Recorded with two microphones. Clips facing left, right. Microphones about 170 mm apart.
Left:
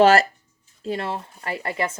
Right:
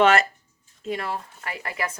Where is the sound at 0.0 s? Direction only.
35° left (ahead or behind).